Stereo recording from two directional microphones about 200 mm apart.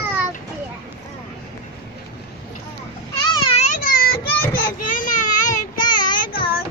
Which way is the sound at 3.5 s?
35° left (ahead or behind).